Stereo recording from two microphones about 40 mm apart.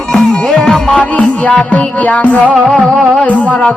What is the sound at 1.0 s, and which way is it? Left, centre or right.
Music, left.